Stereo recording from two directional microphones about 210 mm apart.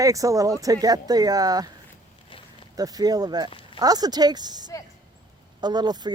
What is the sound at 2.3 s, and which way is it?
Walk, 25° left (ahead or behind).